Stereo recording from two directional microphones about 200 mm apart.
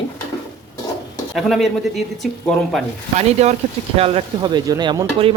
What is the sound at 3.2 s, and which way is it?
Speech, 35° right (ahead or behind).